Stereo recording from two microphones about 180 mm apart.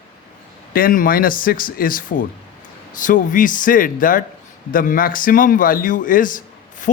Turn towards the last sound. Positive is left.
turn(degrees=50)  # may be behind; listen again after turning